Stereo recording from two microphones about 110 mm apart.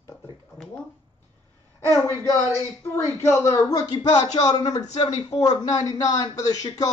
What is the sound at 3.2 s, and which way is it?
A man's voice, 25° left (ahead or behind).